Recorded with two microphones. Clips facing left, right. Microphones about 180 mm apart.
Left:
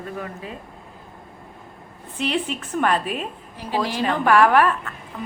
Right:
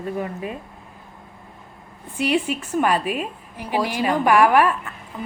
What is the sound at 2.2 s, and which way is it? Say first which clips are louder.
A woman's voice: right 3 dB; 10° right (ahead or behind).